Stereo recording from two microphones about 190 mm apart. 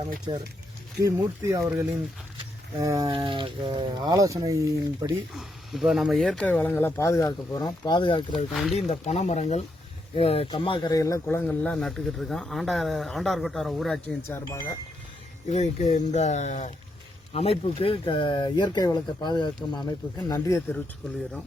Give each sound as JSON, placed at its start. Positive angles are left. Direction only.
{"t": 1.0, "sound": "speech", "side_deg": -15}
{"t": 5.3, "sound": "speech", "side_deg": 0}
{"t": 8.5, "sound": "speech", "side_deg": 0}
{"t": 8.9, "sound": "speech", "side_deg": 35}
{"t": 14.3, "sound": "speech", "side_deg": 15}
{"t": 15.4, "sound": "speech", "side_deg": 35}